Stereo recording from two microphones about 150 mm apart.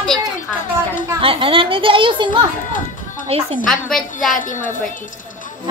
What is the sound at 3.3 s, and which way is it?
Speech, 40° right (ahead or behind).